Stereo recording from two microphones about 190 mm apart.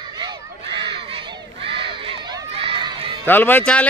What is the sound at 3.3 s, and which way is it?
Speech, 10° left (ahead or behind).